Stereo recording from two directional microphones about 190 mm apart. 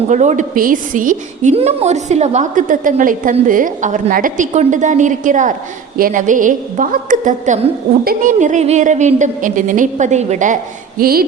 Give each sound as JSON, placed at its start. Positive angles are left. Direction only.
{"t": 0.1, "sound": "a woman's voice", "side_deg": -40}